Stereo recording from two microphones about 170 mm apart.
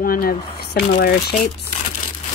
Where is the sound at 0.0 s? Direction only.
55° left (ahead or behind).